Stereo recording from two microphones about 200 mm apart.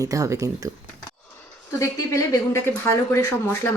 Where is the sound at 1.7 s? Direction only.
15° left (ahead or behind).